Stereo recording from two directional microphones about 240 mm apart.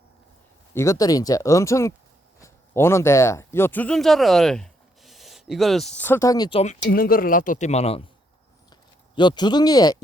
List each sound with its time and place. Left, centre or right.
0.7 s speech: centre
6.9 s speech: left
8.7 s a sound: centre